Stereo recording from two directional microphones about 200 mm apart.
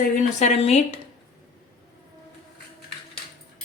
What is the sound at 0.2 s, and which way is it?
Speech, 35° left (ahead or behind).